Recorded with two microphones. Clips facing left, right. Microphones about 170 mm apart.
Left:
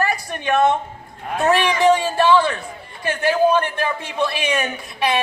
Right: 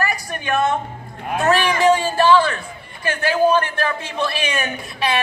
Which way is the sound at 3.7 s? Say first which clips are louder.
Left 1 dB; 15° left (ahead or behind).